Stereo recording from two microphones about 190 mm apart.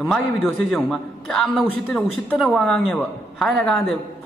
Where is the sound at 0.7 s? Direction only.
5° left (ahead or behind).